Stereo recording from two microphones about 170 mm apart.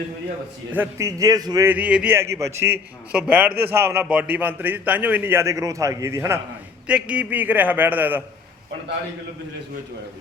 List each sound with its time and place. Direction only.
0.7 s a man's voice: 15° right (ahead or behind)
1.7 s a man's voice: 10° right (ahead or behind)